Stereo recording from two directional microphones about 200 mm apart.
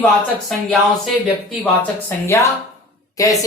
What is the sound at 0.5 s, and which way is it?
Speech, centre (ahead or behind).